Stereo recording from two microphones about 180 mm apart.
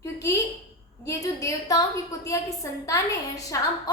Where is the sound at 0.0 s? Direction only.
15° left (ahead or behind).